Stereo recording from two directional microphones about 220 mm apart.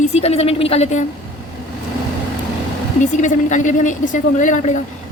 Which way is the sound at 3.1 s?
35° left (ahead or behind).